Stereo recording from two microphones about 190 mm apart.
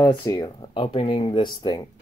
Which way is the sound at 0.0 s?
20° left (ahead or behind).